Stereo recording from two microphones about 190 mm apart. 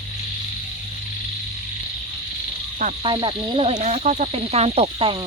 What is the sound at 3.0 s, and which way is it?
Speech, 25° right (ahead or behind).